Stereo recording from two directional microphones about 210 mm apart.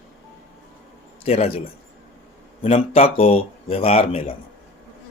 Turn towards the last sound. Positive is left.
turn(degrees=25)  # may be behind; listen again after turning